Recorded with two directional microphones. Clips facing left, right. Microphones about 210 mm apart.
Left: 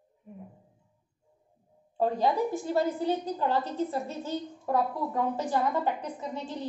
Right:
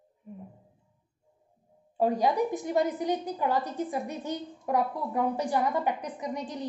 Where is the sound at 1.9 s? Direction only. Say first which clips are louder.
Right 1 dB; 15° right (ahead or behind).